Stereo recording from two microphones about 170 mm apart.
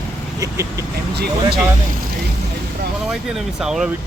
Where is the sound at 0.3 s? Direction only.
20° right (ahead or behind).